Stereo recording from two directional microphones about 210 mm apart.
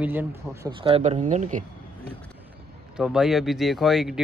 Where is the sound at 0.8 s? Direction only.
30° right (ahead or behind).